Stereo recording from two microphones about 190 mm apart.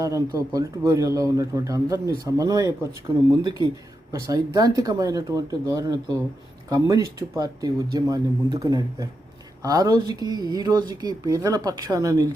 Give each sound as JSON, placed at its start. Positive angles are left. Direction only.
{"t": 0.0, "sound": "speech", "side_deg": -15}